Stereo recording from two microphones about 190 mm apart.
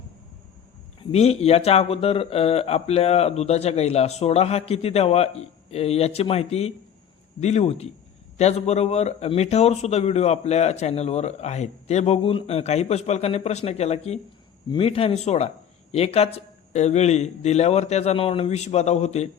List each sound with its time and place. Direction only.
1.1 s speech: 35° left (ahead or behind)